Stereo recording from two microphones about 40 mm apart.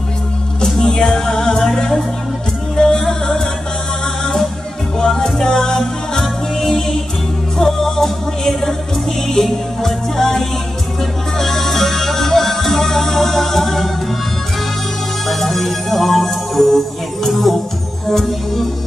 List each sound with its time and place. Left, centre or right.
0.7 s music: centre
2.7 s music: centre
4.9 s music: centre
7.5 s music: centre
15.2 s music: centre